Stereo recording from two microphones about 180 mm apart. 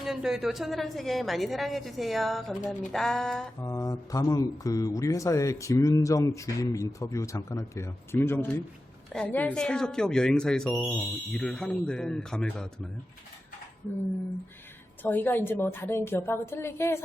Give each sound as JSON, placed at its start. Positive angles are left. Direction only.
{"t": 0.0, "sound": "speech", "side_deg": 0}
{"t": 3.6, "sound": "speech", "side_deg": 20}
{"t": 15.0, "sound": "speech", "side_deg": 10}